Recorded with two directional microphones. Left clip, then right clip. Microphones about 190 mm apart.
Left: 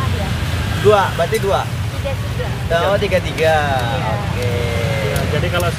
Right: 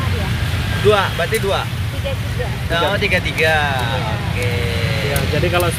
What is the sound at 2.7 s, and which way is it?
Speech, 15° left (ahead or behind).